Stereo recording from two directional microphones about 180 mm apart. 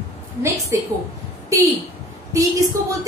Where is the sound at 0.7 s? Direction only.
15° right (ahead or behind).